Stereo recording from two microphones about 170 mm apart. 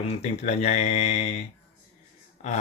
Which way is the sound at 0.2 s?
40° left (ahead or behind).